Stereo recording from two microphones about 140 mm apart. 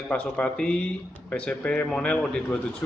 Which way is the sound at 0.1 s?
10° left (ahead or behind).